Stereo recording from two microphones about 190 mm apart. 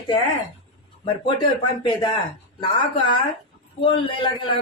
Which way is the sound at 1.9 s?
25° left (ahead or behind).